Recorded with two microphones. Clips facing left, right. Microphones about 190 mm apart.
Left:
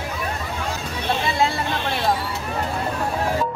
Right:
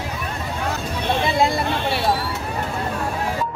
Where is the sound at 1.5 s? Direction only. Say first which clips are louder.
Right 3 dB; 5° right (ahead or behind).